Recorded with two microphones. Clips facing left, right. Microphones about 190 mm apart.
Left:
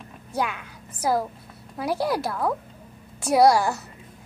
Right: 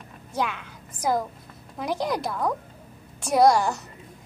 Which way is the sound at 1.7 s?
5° left (ahead or behind).